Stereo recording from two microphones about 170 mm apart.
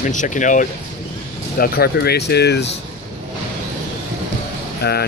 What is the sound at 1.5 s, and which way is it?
Speech, 65° left (ahead or behind).